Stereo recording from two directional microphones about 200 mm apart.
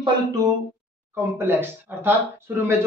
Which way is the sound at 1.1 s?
10° right (ahead or behind).